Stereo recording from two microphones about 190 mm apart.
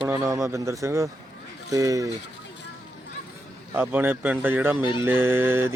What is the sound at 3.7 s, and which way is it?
Speech, 10° right (ahead or behind).